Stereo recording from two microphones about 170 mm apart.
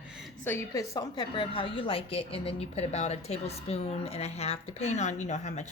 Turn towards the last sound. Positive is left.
turn(degrees=45)  # may be behind; listen again after turning